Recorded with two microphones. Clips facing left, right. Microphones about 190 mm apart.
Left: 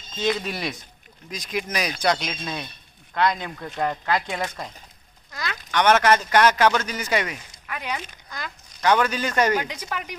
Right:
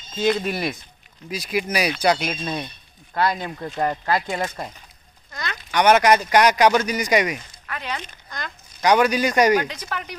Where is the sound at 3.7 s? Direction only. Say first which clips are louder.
Right 2 dB; 10° right (ahead or behind).